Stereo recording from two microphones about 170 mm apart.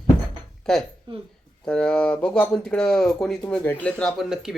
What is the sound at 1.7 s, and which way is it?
Speech, 5° left (ahead or behind).